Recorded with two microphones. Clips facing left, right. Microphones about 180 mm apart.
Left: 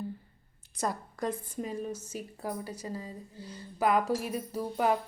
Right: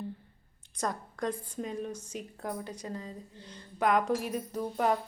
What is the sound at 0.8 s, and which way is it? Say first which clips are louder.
A woman's voice: left 1 dB; 5° left (ahead or behind).